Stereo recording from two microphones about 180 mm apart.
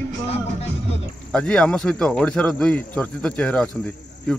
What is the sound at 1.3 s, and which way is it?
A man's voice, 5° left (ahead or behind).